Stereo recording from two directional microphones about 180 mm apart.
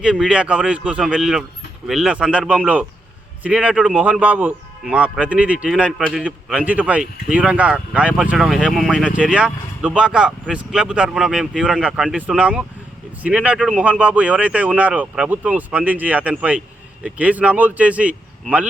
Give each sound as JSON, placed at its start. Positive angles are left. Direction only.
{"t": 0.0, "sound": "speech", "side_deg": -5}
{"t": 6.0, "sound": "a man's voice", "side_deg": 5}
{"t": 6.2, "sound": "speech", "side_deg": -5}